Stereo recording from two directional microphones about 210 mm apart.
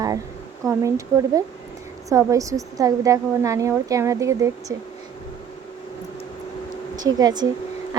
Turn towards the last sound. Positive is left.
turn(degrees=-20)  # may be behind; listen again after turning